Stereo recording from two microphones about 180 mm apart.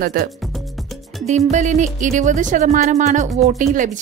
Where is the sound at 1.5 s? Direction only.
40° right (ahead or behind).